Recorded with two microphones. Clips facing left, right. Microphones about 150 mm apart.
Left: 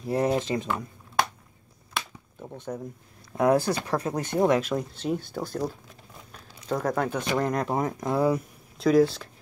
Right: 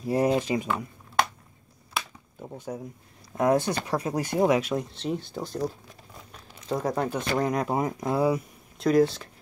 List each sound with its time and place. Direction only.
0.0 s speech: 10° right (ahead or behind)
2.0 s a sound: 5° right (ahead or behind)
3.3 s speech: centre (ahead or behind)
6.8 s speech: 20° right (ahead or behind)
7.3 s speech: 5° right (ahead or behind)